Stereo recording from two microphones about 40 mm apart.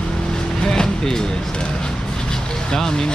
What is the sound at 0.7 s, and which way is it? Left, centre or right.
Speech, centre.